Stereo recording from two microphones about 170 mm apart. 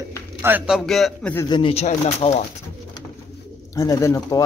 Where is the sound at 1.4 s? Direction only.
30° left (ahead or behind).